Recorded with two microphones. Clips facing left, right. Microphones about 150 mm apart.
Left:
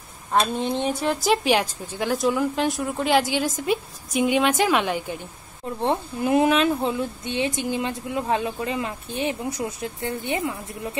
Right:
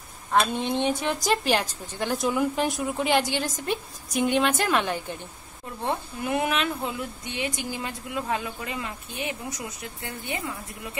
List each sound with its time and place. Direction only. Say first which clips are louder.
0.7 s a woman's voice: left 2 dB; centre (ahead or behind)
5.9 s speech: left 5 dB; 25° left (ahead or behind)